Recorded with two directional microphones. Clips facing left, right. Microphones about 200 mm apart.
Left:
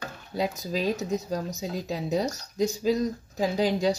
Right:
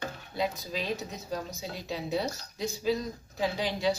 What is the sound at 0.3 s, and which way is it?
Speech, 40° left (ahead or behind).